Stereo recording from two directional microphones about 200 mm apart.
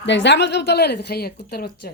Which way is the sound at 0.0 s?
65° left (ahead or behind).